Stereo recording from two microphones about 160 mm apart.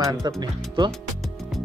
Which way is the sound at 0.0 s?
25° right (ahead or behind).